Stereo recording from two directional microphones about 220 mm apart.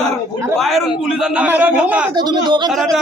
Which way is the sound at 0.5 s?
Centre (ahead or behind).